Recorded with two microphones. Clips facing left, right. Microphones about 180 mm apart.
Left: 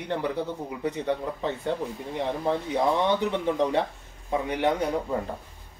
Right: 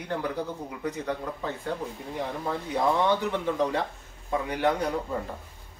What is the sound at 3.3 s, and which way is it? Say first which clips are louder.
Speech: left 2 dB; 20° left (ahead or behind).